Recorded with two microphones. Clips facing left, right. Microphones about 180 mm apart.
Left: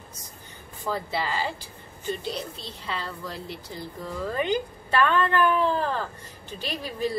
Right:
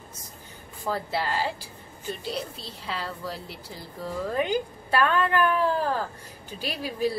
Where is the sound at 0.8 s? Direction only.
5° right (ahead or behind).